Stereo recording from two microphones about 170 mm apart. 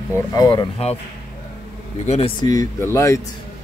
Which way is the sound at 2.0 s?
40° left (ahead or behind).